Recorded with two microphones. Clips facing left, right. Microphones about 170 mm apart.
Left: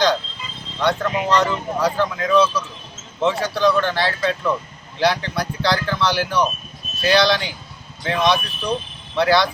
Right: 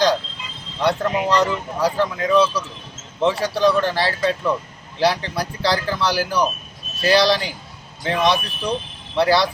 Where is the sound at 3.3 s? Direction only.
35° right (ahead or behind).